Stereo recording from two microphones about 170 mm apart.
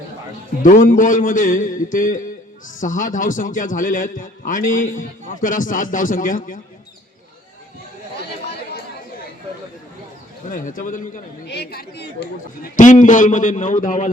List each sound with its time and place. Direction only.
0.6 s a man's voice: 50° left (ahead or behind)
10.5 s a man's voice: 55° left (ahead or behind)
11.4 s speech: 75° left (ahead or behind)
12.7 s a man's voice: 50° left (ahead or behind)